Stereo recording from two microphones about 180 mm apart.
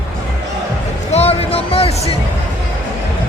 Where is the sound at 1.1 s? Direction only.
35° left (ahead or behind).